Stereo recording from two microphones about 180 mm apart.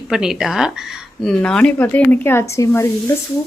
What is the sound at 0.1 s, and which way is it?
A woman's voice, 5° right (ahead or behind).